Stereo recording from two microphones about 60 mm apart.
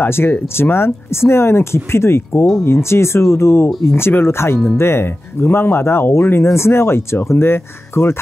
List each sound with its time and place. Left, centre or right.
0.0 s speech: left